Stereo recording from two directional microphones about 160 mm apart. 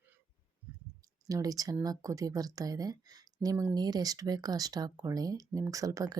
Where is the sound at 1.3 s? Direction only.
20° right (ahead or behind).